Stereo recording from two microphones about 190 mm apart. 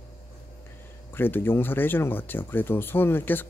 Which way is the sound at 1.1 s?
10° left (ahead or behind).